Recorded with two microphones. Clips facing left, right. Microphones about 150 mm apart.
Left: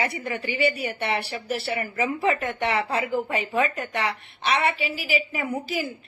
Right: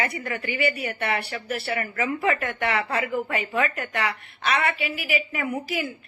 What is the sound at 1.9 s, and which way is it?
Speech, 20° left (ahead or behind).